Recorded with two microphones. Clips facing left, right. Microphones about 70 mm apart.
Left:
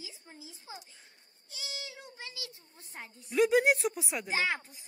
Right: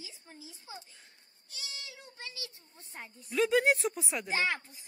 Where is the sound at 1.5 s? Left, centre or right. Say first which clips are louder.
Left 3 dB; left.